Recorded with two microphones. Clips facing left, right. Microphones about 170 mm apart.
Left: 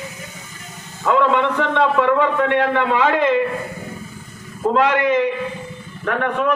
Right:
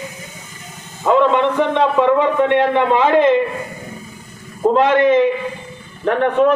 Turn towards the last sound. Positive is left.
turn(degrees=-30)  # may be behind; listen again after turning